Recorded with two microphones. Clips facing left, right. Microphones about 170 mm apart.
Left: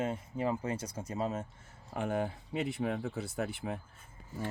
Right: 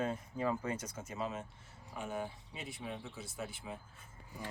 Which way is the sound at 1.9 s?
60° left (ahead or behind).